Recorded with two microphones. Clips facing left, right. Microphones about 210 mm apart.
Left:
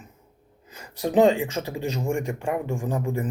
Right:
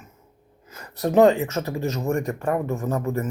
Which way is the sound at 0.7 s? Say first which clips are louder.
Right 2 dB; 15° left (ahead or behind).